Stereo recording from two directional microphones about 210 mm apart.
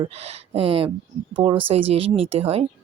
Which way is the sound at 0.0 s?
30° right (ahead or behind).